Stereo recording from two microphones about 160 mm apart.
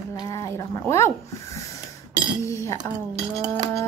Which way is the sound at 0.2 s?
20° left (ahead or behind).